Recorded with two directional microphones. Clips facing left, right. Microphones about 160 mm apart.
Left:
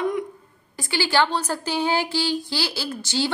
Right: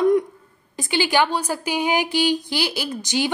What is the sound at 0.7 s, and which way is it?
A woman's voice, 20° right (ahead or behind).